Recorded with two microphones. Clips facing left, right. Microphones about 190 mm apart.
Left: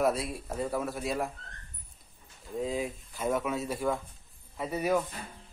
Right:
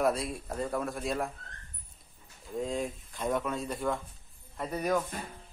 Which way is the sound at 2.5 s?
Centre (ahead or behind).